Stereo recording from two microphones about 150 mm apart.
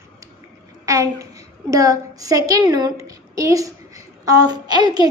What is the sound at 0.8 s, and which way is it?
A woman's voice, 20° right (ahead or behind).